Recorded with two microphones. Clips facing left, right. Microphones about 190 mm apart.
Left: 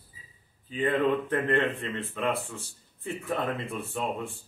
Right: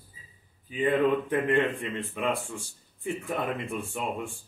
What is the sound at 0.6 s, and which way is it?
Speech, 15° right (ahead or behind).